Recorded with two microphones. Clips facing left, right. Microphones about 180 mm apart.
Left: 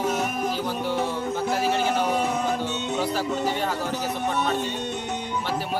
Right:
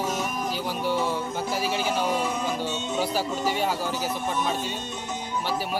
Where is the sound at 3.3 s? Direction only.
65° left (ahead or behind).